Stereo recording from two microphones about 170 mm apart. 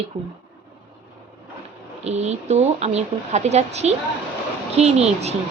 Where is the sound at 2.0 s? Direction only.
40° right (ahead or behind).